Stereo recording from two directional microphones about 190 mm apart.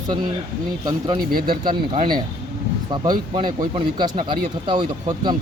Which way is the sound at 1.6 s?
25° right (ahead or behind).